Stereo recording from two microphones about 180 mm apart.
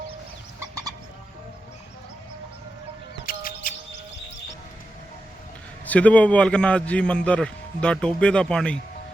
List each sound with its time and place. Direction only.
3.2 s music: 50° left (ahead or behind)
5.8 s a man's voice: 10° left (ahead or behind)